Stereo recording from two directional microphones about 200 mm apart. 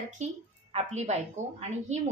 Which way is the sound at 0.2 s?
35° right (ahead or behind).